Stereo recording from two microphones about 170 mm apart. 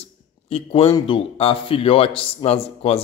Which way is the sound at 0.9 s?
30° left (ahead or behind).